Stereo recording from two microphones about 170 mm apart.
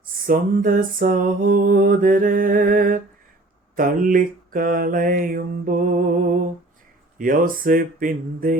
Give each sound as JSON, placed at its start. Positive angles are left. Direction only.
{"t": 0.0, "sound": "music", "side_deg": -55}
{"t": 7.2, "sound": "music", "side_deg": -55}